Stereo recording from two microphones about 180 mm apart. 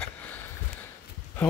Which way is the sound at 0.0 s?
10° left (ahead or behind).